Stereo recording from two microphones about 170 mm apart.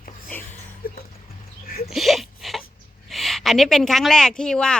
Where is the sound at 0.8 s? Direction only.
60° left (ahead or behind).